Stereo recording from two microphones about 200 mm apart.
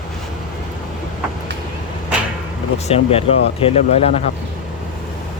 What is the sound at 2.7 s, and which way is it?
Speech, 30° left (ahead or behind).